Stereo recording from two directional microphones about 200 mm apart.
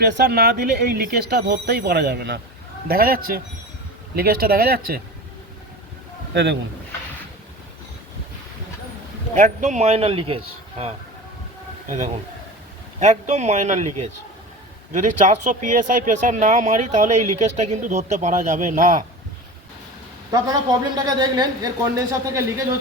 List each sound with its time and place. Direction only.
0.0 s speech: 55° right (ahead or behind)
6.3 s speech: 60° right (ahead or behind)
9.3 s speech: 40° right (ahead or behind)
13.0 s speech: 35° right (ahead or behind)
20.3 s speech: 20° right (ahead or behind)